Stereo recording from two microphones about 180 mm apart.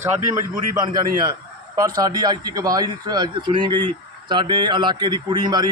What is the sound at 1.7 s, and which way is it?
Speech, 20° right (ahead or behind).